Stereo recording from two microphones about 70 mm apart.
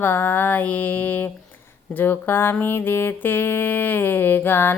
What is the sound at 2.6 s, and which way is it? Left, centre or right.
Music, left.